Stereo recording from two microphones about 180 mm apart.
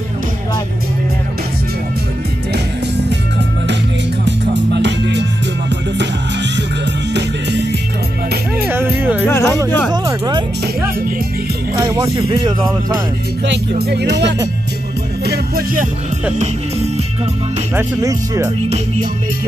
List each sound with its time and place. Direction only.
4.3 s music: 75° right (ahead or behind)
8.6 s music: 10° right (ahead or behind)
9.2 s music: 15° left (ahead or behind)
10.0 s music: 20° right (ahead or behind)
11.7 s speech: 15° right (ahead or behind)
13.5 s music: 65° right (ahead or behind)
15.2 s music: 60° right (ahead or behind)
17.7 s speech: 20° right (ahead or behind)